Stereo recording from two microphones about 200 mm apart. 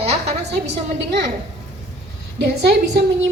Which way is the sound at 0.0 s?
30° right (ahead or behind).